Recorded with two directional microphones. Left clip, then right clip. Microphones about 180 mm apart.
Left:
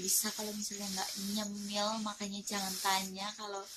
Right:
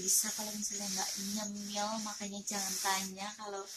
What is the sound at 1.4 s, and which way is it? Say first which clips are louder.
Speech: left 4 dB; 25° left (ahead or behind).